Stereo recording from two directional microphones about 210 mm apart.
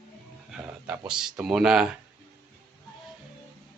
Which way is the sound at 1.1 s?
5° right (ahead or behind).